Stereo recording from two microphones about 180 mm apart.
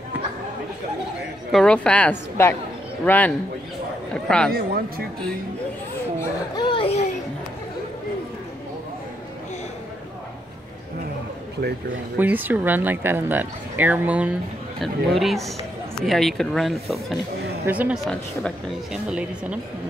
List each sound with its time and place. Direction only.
1.5 s a woman's voice: 5° left (ahead or behind)
4.5 s speech: 55° right (ahead or behind)
6.5 s a sound: 25° left (ahead or behind)
12.2 s speech: 10° right (ahead or behind)